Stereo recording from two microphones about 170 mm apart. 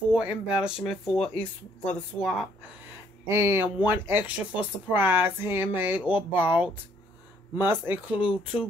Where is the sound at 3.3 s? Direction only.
15° right (ahead or behind).